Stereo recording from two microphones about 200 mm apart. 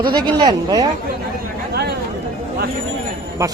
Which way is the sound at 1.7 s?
50° right (ahead or behind).